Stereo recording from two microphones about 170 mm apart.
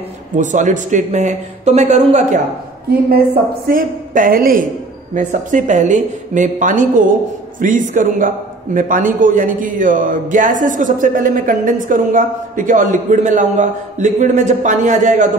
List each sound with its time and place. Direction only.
0.4 s a man's voice: 45° right (ahead or behind)
3.6 s a woman's voice: 55° right (ahead or behind)